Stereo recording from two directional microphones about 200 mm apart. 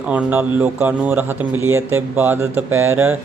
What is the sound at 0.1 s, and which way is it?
Speech, 5° right (ahead or behind).